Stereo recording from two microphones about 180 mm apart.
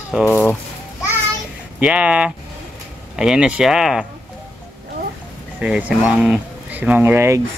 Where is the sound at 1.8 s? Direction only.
5° right (ahead or behind).